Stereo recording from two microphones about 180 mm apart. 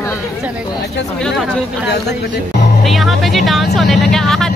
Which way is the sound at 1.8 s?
65° left (ahead or behind).